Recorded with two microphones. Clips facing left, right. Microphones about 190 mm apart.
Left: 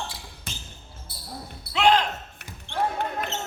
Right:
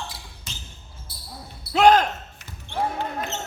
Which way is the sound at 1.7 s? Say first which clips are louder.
Right 5 dB; 45° right (ahead or behind).